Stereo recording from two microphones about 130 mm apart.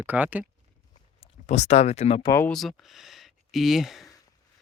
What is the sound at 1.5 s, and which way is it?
Speech, 60° left (ahead or behind).